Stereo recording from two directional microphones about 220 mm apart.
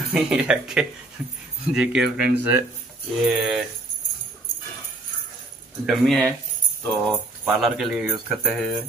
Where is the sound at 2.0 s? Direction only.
45° right (ahead or behind).